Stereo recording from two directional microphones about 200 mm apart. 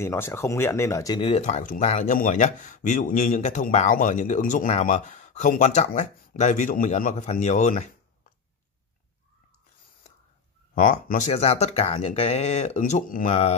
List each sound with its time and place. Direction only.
0.0 s speech: 15° left (ahead or behind)
1.2 s speech: 35° left (ahead or behind)
10.7 s speech: 40° left (ahead or behind)